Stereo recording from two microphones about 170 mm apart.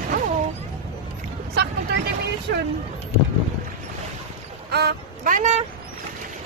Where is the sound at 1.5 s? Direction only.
75° right (ahead or behind).